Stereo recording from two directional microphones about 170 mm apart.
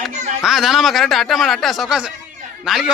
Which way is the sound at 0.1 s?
45° right (ahead or behind).